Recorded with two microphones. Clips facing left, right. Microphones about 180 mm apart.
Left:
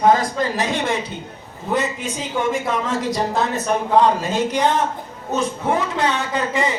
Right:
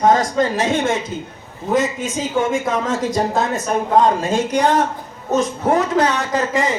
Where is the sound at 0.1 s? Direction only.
45° right (ahead or behind).